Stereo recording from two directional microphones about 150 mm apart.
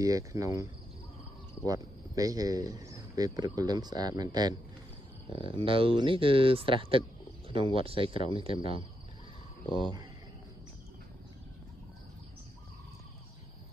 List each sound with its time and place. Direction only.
0.0 s speech: 20° right (ahead or behind)
1.7 s speech: 25° right (ahead or behind)
5.3 s speech: 40° left (ahead or behind)
5.6 s speech: 35° right (ahead or behind)
9.7 s speech: 35° left (ahead or behind)